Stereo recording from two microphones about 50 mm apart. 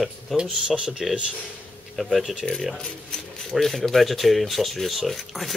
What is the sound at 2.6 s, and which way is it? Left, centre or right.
Speech, centre.